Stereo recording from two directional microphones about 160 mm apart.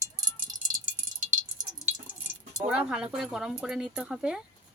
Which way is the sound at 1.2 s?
45° right (ahead or behind).